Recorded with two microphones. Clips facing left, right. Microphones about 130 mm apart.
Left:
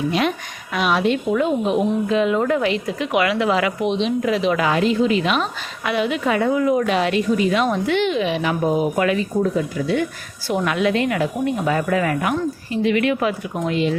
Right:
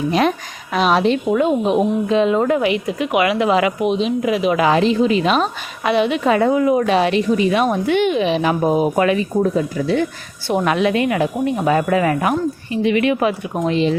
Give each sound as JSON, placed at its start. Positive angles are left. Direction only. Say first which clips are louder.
{"t": 0.1, "sound": "a woman's voice", "louder": "right 4 dB", "side_deg": -40}
{"t": 3.8, "sound": "speech", "louder": "right 2 dB", "side_deg": -5}
{"t": 4.6, "sound": "a woman's voice", "louder": "right 3 dB", "side_deg": -25}